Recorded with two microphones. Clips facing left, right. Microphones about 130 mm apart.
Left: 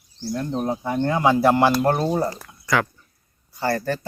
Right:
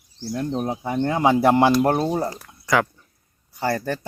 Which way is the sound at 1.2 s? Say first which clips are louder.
Right 1 dB; 20° right (ahead or behind).